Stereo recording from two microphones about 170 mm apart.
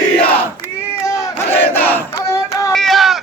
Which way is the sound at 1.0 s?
15° left (ahead or behind).